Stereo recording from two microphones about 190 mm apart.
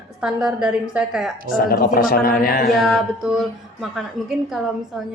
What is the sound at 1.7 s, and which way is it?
Speech, 50° left (ahead or behind).